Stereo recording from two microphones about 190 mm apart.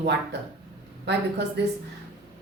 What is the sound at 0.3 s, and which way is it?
A woman's voice, 65° right (ahead or behind).